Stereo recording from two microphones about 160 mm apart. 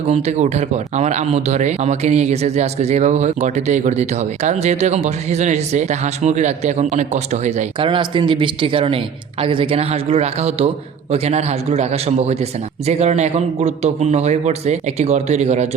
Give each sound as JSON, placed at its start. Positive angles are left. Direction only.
{"t": 0.1, "sound": "speech", "side_deg": -45}
{"t": 7.9, "sound": "speech", "side_deg": -30}